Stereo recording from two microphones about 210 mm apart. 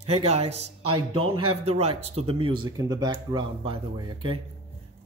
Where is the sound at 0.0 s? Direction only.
25° right (ahead or behind).